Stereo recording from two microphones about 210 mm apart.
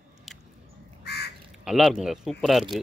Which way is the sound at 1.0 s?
50° left (ahead or behind).